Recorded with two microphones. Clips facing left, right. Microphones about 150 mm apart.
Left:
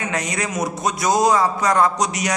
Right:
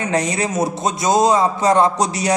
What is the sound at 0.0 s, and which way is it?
A man's voice, 30° right (ahead or behind).